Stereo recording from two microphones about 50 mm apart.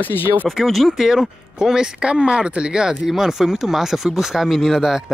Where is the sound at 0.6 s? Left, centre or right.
Centre.